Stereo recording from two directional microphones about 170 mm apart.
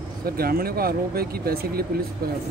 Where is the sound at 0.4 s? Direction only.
60° right (ahead or behind).